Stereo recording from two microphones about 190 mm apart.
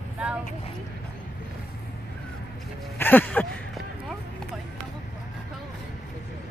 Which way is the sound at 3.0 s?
10° left (ahead or behind).